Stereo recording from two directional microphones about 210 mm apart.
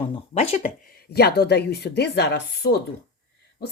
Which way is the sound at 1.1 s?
50° left (ahead or behind).